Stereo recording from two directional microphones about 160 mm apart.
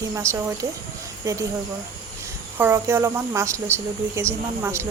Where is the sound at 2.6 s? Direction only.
15° right (ahead or behind).